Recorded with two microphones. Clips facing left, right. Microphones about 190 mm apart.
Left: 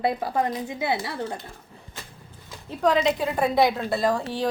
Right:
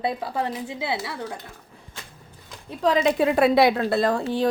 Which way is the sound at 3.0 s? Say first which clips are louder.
Right 4 dB; 75° right (ahead or behind).